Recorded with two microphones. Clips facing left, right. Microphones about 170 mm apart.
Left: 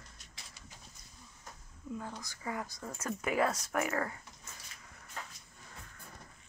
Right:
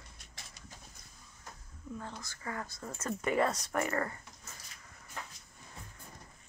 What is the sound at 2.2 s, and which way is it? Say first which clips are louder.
Speech: left 1 dB; 15° left (ahead or behind).